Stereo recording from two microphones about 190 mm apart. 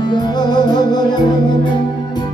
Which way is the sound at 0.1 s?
20° left (ahead or behind).